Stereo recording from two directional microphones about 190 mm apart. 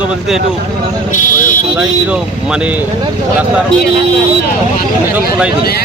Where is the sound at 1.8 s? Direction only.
5° right (ahead or behind).